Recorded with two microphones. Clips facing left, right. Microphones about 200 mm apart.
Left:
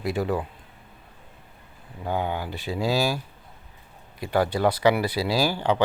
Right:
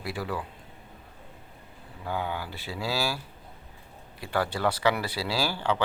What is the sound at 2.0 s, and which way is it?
Speech, 20° left (ahead or behind).